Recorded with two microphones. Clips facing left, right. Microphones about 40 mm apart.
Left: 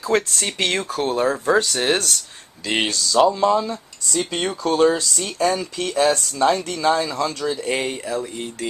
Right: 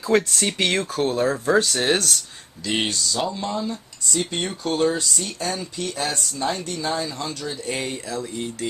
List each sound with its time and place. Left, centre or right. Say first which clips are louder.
0.0 s speech: right 1 dB; centre
2.8 s speech: left 10 dB; left
3.4 s speech: left 8 dB; left
7.6 s speech: left 3 dB; left
7.9 s a sound: left 4 dB; left